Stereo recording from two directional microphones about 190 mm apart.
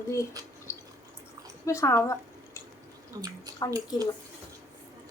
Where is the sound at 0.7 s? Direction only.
15° left (ahead or behind).